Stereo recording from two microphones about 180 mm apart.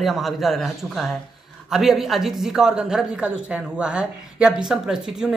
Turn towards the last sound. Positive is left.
turn(degrees=-5)  # may be behind; listen again after turning